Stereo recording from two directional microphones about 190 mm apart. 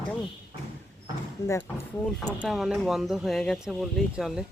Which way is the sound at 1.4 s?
20° left (ahead or behind).